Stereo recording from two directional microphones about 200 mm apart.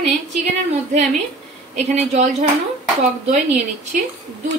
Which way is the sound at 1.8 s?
35° right (ahead or behind).